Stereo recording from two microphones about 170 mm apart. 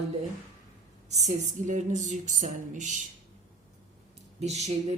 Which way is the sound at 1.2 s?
45° right (ahead or behind).